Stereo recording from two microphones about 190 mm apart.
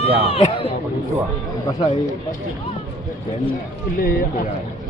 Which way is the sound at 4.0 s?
50° left (ahead or behind).